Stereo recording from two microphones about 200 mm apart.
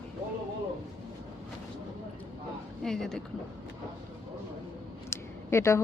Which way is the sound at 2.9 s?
Centre (ahead or behind).